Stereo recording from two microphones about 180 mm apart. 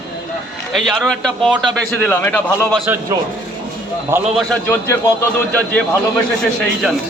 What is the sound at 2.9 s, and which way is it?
Speech, 10° right (ahead or behind).